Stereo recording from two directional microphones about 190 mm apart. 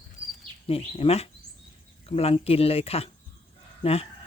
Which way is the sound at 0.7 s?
30° left (ahead or behind).